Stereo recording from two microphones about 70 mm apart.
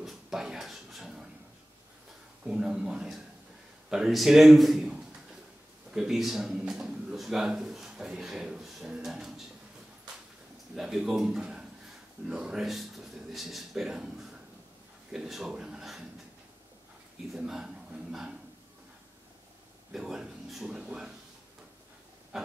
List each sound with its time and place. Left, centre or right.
0.0 s a sound: centre
2.4 s speech: centre
10.8 s speech: centre
17.5 s a man's voice: centre
19.9 s speech: centre
22.3 s a sound: centre